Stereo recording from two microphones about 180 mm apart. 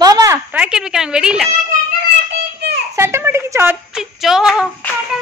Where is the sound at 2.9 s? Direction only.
15° right (ahead or behind).